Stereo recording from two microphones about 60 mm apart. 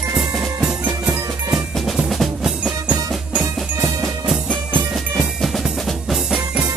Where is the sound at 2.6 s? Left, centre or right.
Right.